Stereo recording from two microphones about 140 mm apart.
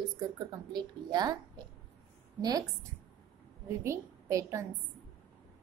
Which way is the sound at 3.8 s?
20° right (ahead or behind).